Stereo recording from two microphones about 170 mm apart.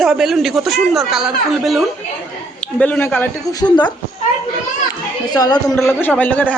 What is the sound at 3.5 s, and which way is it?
Speech, 25° left (ahead or behind).